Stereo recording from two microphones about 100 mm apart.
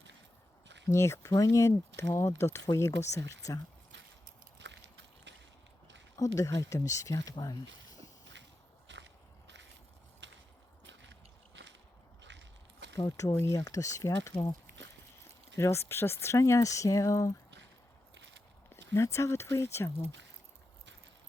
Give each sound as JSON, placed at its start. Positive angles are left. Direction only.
{"t": 0.9, "sound": "speech", "side_deg": 30}
{"t": 6.1, "sound": "speech", "side_deg": 35}
{"t": 13.1, "sound": "speech", "side_deg": 30}
{"t": 15.5, "sound": "speech", "side_deg": 25}
{"t": 18.7, "sound": "speech", "side_deg": 30}